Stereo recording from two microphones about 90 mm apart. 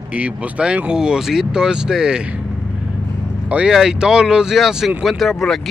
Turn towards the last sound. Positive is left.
turn(degrees=0)  # may be behind; listen again after turning